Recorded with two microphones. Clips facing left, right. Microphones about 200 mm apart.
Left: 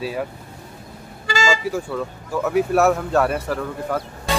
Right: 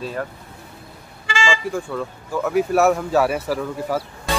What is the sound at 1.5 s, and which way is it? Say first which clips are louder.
Speech: left 1 dB; 5° left (ahead or behind).